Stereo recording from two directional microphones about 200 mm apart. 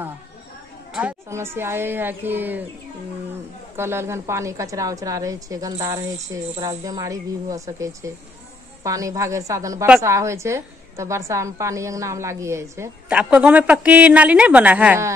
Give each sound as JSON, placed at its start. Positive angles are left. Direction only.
{"t": 0.9, "sound": "a woman's voice", "side_deg": -10}
{"t": 3.7, "sound": "a woman's voice", "side_deg": -10}
{"t": 6.5, "sound": "speech", "side_deg": -30}
{"t": 6.8, "sound": "a woman's voice", "side_deg": -15}